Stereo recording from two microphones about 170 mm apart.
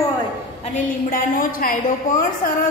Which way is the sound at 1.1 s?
55° left (ahead or behind).